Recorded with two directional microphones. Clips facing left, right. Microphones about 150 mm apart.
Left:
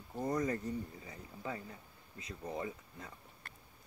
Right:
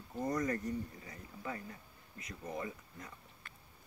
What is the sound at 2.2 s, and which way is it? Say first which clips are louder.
Speech: left 1 dB; 25° left (ahead or behind).